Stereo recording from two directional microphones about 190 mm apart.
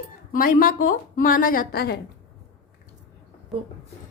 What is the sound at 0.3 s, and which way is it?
A woman's voice, 45° left (ahead or behind).